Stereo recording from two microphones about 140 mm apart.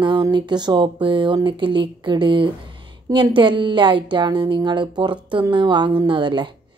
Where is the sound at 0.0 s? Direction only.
30° right (ahead or behind).